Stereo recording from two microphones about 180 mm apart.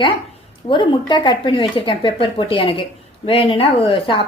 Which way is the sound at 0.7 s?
25° left (ahead or behind).